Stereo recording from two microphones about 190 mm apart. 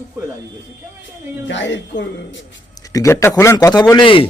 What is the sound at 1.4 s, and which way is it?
Speech, 75° left (ahead or behind).